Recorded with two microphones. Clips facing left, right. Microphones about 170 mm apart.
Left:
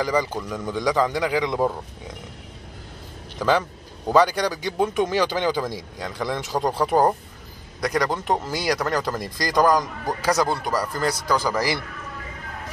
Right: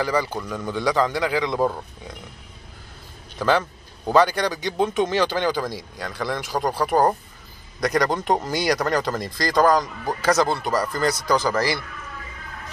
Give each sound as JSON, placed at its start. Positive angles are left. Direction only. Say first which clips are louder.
{"t": 0.0, "sound": "a man's voice", "louder": "even", "side_deg": 15}
{"t": 3.3, "sound": "a man's voice", "louder": "even", "side_deg": 10}
{"t": 7.8, "sound": "a man's voice", "louder": "right 2 dB", "side_deg": 5}